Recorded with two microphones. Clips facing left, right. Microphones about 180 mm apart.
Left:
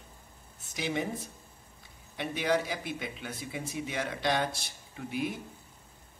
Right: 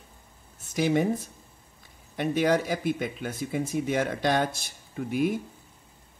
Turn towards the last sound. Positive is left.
turn(degrees=-50)  # may be behind; listen again after turning